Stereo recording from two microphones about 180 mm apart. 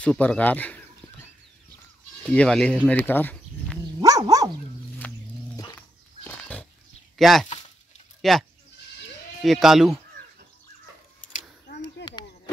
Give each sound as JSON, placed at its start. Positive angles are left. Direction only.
{"t": 0.0, "sound": "bird", "side_deg": 5}
{"t": 2.2, "sound": "speech", "side_deg": 5}
{"t": 4.0, "sound": "dog", "side_deg": -20}
{"t": 5.0, "sound": "a sound", "side_deg": 5}
{"t": 7.2, "sound": "speech", "side_deg": 0}
{"t": 11.8, "sound": "a sound", "side_deg": 25}